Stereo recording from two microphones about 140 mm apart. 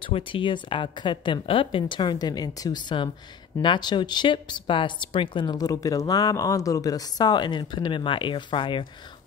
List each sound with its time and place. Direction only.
0.1 s speech: 35° left (ahead or behind)